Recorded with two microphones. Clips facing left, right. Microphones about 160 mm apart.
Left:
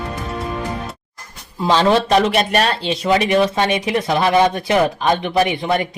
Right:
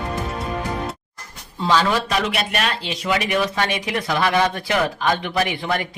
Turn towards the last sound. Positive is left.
turn(degrees=20)  # may be behind; listen again after turning